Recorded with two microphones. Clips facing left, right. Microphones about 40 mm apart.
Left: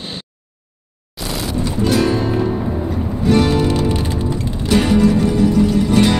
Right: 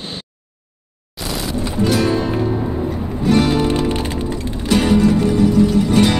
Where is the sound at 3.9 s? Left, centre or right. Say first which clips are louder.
Left 1 dB; right.